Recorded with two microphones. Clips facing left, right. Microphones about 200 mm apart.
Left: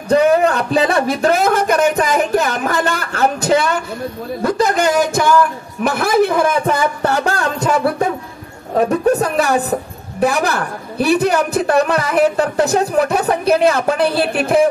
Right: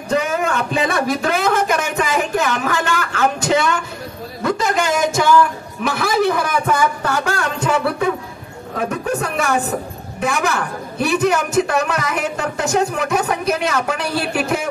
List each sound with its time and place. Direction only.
0.1 s speech: 35° left (ahead or behind)
1.3 s a sound: 40° left (ahead or behind)
5.9 s a man's voice: 55° left (ahead or behind)
7.1 s a man's voice: 35° left (ahead or behind)